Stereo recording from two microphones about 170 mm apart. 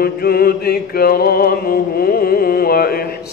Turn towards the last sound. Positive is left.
turn(degrees=60)  # may be behind; listen again after turning